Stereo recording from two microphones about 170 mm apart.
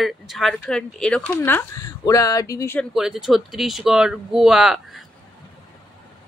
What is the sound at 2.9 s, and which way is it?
Speech, centre (ahead or behind).